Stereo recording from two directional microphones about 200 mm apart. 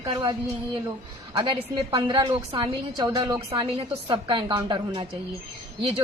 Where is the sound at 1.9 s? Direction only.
25° right (ahead or behind).